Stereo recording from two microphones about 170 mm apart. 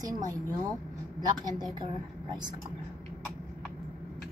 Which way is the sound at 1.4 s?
25° right (ahead or behind).